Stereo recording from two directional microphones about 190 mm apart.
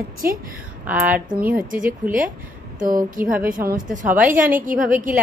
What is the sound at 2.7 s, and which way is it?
Speech, 45° right (ahead or behind).